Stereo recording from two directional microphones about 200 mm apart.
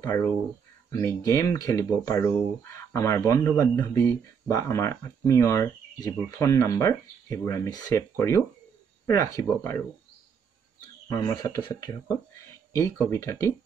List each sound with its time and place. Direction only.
0.8 s speech: 15° left (ahead or behind)
11.1 s speech: 15° left (ahead or behind)